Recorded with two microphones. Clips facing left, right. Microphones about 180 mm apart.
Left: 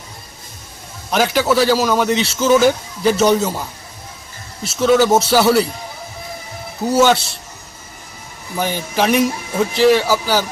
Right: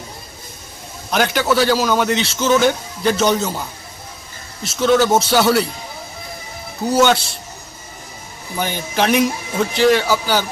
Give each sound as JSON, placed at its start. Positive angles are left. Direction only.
{"t": 1.1, "sound": "a man's voice", "side_deg": 0}
{"t": 6.8, "sound": "a man's voice", "side_deg": 5}
{"t": 8.5, "sound": "a man's voice", "side_deg": 0}